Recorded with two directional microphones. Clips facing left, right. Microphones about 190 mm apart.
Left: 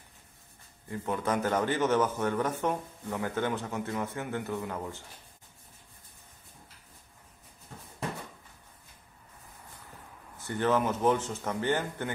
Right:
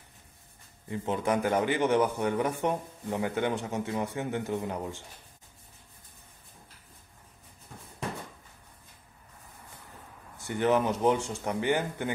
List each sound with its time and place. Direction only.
0.8 s a man's voice: 20° right (ahead or behind)
10.4 s a man's voice: 15° right (ahead or behind)